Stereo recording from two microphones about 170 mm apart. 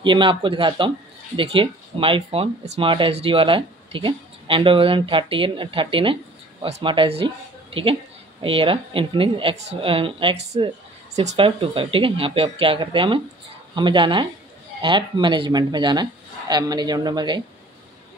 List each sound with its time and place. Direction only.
0.0 s speech: 30° right (ahead or behind)